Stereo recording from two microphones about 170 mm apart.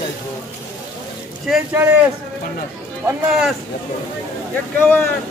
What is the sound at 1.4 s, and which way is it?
Speech, 5° right (ahead or behind).